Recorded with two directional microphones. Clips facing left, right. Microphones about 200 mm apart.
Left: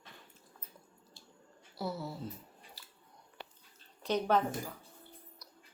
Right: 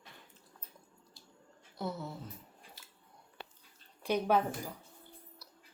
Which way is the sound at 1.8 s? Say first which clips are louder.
Left 1 dB; 5° left (ahead or behind).